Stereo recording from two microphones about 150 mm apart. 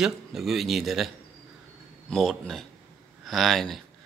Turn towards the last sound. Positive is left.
turn(degrees=0)  # may be behind; listen again after turning